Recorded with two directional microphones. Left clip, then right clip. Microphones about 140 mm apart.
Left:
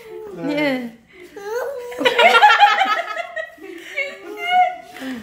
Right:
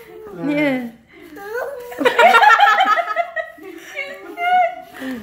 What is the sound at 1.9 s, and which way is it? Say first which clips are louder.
Laughter: right 2 dB; 10° left (ahead or behind).